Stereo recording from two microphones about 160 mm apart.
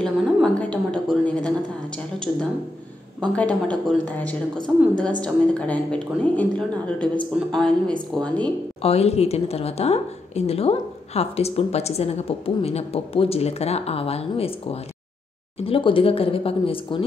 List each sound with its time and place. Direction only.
0.0 s a woman's voice: 5° left (ahead or behind)
3.2 s a woman's voice: 10° left (ahead or behind)
8.8 s a woman's voice: 40° left (ahead or behind)